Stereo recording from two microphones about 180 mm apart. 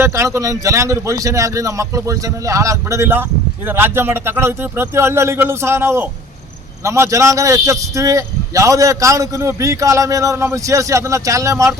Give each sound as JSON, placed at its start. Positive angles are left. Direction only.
{"t": 0.0, "sound": "a man's voice", "side_deg": -15}